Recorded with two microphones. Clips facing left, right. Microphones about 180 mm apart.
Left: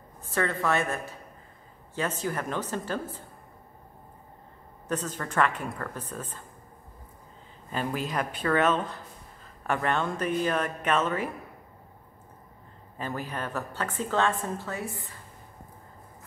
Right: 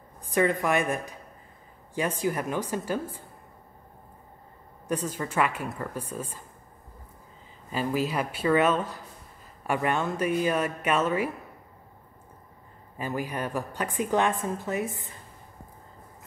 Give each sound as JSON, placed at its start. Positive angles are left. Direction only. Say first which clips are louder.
{"t": 0.2, "sound": "a woman's voice", "louder": "right 4 dB", "side_deg": -15}
{"t": 4.8, "sound": "a woman's voice", "louder": "right 2 dB", "side_deg": -10}
{"t": 7.7, "sound": "a woman's voice", "louder": "right 3 dB", "side_deg": -5}
{"t": 12.9, "sound": "a woman's voice", "louder": "right 3 dB", "side_deg": -10}